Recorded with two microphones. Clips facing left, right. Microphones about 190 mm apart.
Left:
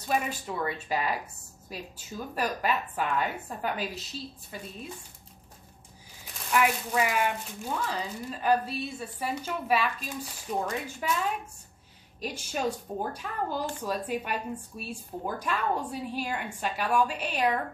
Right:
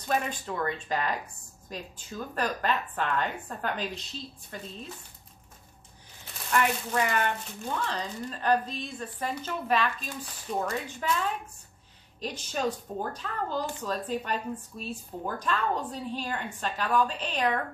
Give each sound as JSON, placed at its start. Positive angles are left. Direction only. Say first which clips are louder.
{"t": 0.0, "sound": "speech", "louder": "even", "side_deg": 10}
{"t": 6.5, "sound": "speech", "louder": "left 1 dB", "side_deg": 5}
{"t": 12.2, "sound": "speech", "louder": "even", "side_deg": 10}